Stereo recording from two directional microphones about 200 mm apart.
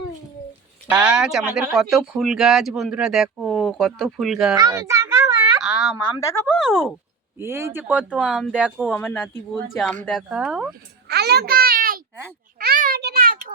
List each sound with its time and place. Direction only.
0.9 s speech: 5° right (ahead or behind)
4.5 s a sound: 20° right (ahead or behind)
5.6 s a sound: 5° right (ahead or behind)
6.1 s speech: 15° left (ahead or behind)
6.5 s speech: centre (ahead or behind)
7.3 s speech: 10° right (ahead or behind)
9.0 s speech: 10° left (ahead or behind)
11.1 s babbling: 55° right (ahead or behind)
12.5 s a sound: 45° right (ahead or behind)